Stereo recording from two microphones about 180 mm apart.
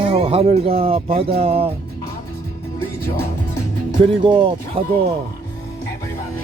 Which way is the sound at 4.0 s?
30° right (ahead or behind).